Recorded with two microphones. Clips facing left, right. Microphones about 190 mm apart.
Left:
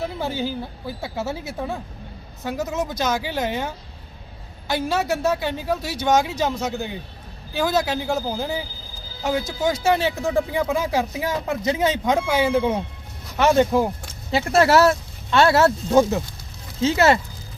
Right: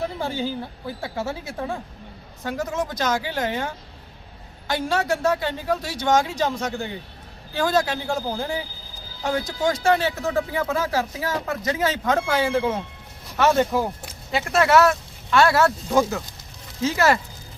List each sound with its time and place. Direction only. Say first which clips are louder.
0.2 s speech: left 1 dB; 10° left (ahead or behind)
4.7 s speech: left 1 dB; 10° left (ahead or behind)
9.6 s speech: right 1 dB; 10° left (ahead or behind)
14.3 s speech: left 3 dB; 30° left (ahead or behind)